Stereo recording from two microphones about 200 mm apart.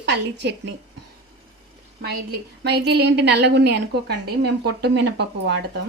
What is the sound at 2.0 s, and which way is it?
A woman's voice, 50° right (ahead or behind).